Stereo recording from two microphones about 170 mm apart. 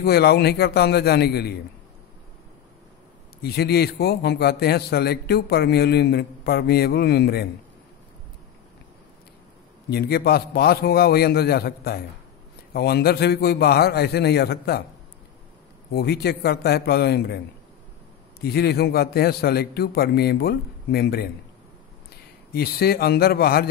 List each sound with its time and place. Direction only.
0.0 s a man's voice: 70° left (ahead or behind)
3.4 s a man's voice: 70° left (ahead or behind)
9.8 s a man's voice: 65° left (ahead or behind)
15.9 s a man's voice: 70° left (ahead or behind)
18.4 s a man's voice: 70° left (ahead or behind)
22.5 s a man's voice: 65° left (ahead or behind)